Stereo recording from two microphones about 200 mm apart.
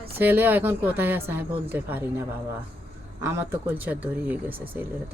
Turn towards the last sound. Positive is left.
turn(degrees=-10)  # may be behind; listen again after turning